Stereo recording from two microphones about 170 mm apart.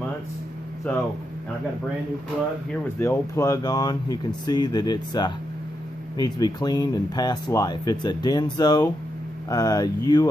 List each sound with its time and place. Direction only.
3.0 s speech: 15° left (ahead or behind)